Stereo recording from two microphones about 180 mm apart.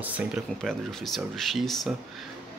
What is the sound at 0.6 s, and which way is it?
Speech, centre (ahead or behind).